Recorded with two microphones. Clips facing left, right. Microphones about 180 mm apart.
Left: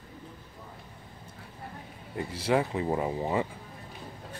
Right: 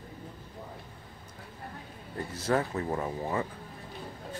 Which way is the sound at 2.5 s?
15° left (ahead or behind).